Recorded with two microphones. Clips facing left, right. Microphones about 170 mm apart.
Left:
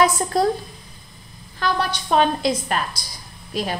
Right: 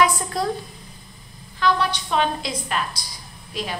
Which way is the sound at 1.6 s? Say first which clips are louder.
Right 2 dB; 40° left (ahead or behind).